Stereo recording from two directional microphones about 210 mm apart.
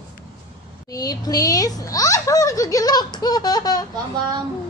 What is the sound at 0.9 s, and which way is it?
A child's voice, 15° left (ahead or behind).